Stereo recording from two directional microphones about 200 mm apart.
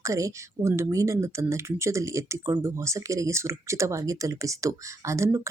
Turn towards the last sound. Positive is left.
turn(degrees=-15)  # may be behind; listen again after turning